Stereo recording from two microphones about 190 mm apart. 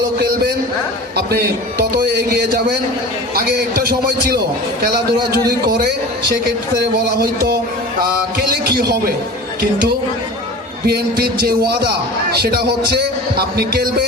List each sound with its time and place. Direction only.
1.1 s speech: 55° right (ahead or behind)
3.8 s a man's voice: 55° right (ahead or behind)
7.2 s a man's voice: 55° right (ahead or behind)
10.8 s a man's voice: 55° right (ahead or behind)